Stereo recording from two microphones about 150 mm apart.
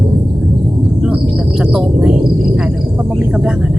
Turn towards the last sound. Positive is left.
turn(degrees=-5)  # may be behind; listen again after turning